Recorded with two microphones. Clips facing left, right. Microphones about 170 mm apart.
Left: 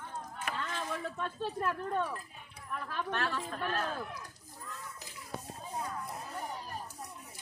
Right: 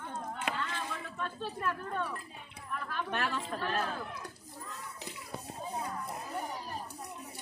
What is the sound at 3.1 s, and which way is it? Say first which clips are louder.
Speech: right 1 dB; 15° right (ahead or behind).